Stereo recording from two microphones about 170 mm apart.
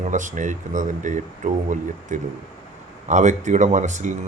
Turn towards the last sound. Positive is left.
turn(degrees=-45)  # may be behind; listen again after turning